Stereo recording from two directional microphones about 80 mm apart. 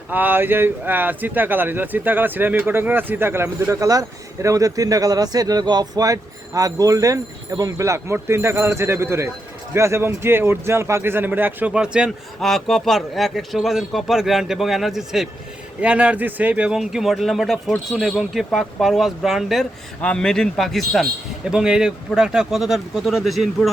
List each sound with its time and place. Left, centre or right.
0.1 s speech: right
3.8 s speech: right
11.7 s speech: centre
12.4 s speech: centre
15.8 s speech: centre
20.0 s a man's voice: centre
21.5 s speech: centre